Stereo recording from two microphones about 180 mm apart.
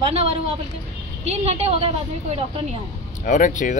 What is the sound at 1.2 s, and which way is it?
Speech, 35° right (ahead or behind).